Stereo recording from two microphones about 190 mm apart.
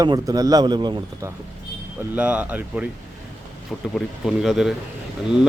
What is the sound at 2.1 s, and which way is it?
Speech, 10° right (ahead or behind).